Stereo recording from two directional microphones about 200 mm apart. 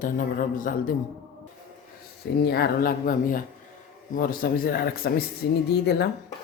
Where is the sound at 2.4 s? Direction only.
50° left (ahead or behind).